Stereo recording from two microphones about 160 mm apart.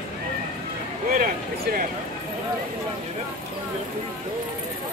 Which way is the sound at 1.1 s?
65° right (ahead or behind).